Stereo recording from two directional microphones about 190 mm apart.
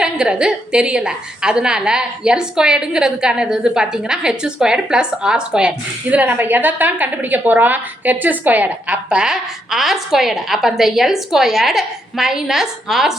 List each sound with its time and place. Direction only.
0.0 s a woman's voice: 5° right (ahead or behind)